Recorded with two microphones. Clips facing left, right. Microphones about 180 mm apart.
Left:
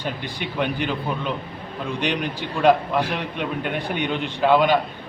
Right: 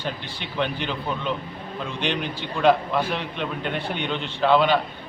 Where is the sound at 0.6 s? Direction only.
10° left (ahead or behind).